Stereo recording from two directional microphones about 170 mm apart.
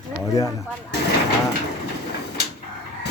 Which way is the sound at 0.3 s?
20° left (ahead or behind).